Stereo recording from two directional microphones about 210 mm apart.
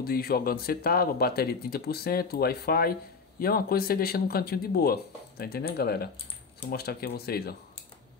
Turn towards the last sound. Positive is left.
turn(degrees=50)  # may be behind; listen again after turning